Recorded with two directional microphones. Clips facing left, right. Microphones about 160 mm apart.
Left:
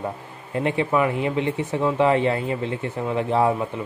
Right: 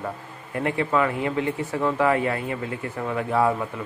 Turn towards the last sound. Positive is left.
turn(degrees=20)  # may be behind; listen again after turning